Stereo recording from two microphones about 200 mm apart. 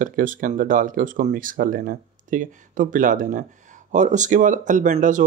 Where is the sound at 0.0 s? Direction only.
45° right (ahead or behind).